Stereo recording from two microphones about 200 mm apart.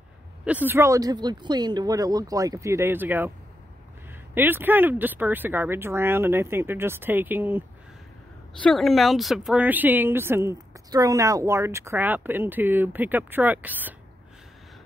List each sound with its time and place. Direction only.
0.5 s speech: 10° right (ahead or behind)
8.5 s speech: centre (ahead or behind)